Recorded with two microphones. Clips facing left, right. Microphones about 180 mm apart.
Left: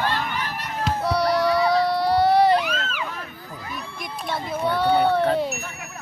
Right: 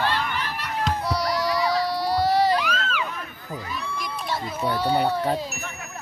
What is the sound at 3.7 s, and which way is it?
Crowd, 55° left (ahead or behind).